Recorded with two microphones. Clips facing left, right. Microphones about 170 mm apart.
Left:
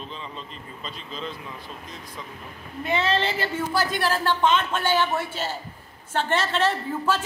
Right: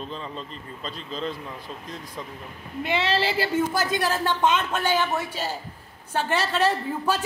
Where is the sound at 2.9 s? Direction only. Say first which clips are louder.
Left 1 dB; 5° right (ahead or behind).